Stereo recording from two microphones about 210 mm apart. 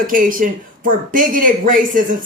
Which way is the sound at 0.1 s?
40° right (ahead or behind).